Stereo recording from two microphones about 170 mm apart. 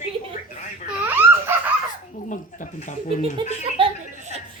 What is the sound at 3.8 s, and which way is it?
Chuckle, 30° right (ahead or behind).